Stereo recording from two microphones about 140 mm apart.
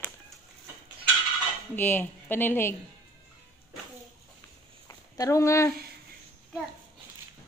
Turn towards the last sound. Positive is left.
turn(degrees=20)  # may be behind; listen again after turning